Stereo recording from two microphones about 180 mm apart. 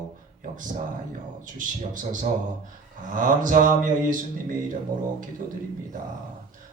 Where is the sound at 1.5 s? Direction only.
45° right (ahead or behind).